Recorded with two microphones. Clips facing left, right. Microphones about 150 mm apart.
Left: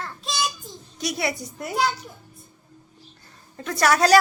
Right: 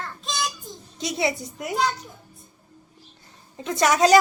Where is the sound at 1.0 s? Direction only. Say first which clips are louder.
Right 2 dB; 20° right (ahead or behind).